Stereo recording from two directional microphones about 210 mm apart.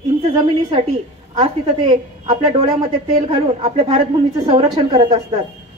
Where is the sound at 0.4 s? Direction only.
25° right (ahead or behind).